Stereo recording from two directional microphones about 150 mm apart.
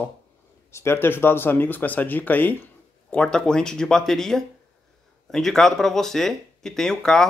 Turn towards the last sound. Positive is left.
turn(degrees=5)  # may be behind; listen again after turning